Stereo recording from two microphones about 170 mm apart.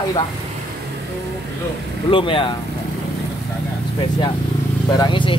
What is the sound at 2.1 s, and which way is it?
Speech, 30° left (ahead or behind).